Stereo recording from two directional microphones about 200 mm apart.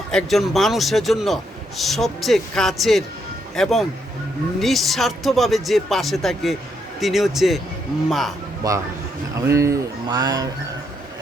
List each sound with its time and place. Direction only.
0.1 s a man's voice: centre (ahead or behind)
8.6 s speech: 20° right (ahead or behind)